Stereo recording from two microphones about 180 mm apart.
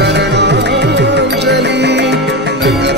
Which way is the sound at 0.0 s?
70° right (ahead or behind).